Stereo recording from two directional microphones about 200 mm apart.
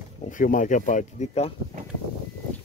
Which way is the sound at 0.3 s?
40° left (ahead or behind).